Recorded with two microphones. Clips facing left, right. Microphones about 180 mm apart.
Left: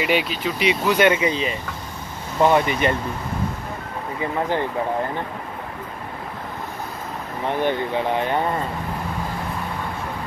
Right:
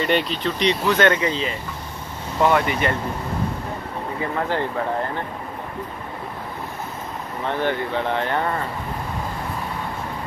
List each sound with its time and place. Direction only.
0.0 s speech: 5° left (ahead or behind); by 3.0 s 20° left (ahead or behind)
4.2 s speech: 15° left (ahead or behind)
7.4 s speech: 15° left (ahead or behind)